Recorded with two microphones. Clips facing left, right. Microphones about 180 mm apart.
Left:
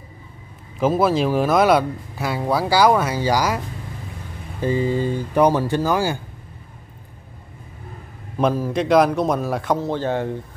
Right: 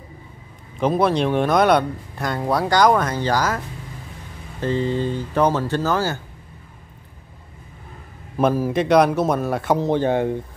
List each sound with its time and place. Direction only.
0.7 s speech: centre (ahead or behind)
8.4 s speech: 5° right (ahead or behind)
9.8 s speech: 15° right (ahead or behind)